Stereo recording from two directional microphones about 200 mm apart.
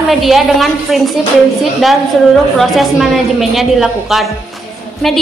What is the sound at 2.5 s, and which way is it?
A woman's voice, centre (ahead or behind).